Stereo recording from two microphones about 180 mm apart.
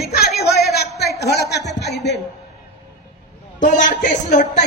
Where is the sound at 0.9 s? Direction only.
60° left (ahead or behind).